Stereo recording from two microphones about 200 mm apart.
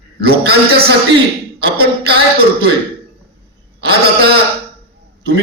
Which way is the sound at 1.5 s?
55° right (ahead or behind).